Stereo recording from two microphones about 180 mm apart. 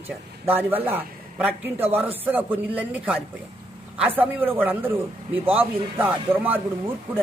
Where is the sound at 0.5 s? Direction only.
10° right (ahead or behind).